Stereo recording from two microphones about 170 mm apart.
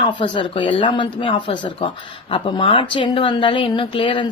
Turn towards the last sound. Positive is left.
turn(degrees=30)  # may be behind; listen again after turning